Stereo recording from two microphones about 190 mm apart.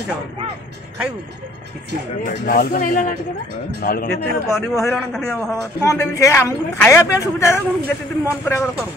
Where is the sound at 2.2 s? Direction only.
50° left (ahead or behind).